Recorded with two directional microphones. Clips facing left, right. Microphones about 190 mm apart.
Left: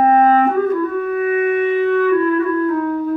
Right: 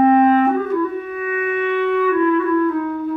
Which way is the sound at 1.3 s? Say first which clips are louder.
Left 4 dB; 40° left (ahead or behind).